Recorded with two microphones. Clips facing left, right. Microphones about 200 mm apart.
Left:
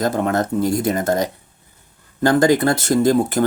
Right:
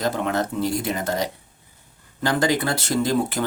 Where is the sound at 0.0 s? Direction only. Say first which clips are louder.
Left 4 dB; 45° left (ahead or behind).